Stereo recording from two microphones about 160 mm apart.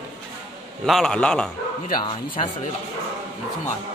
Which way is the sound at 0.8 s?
Centre (ahead or behind).